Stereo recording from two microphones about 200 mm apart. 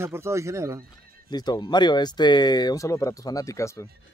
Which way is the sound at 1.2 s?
20° left (ahead or behind).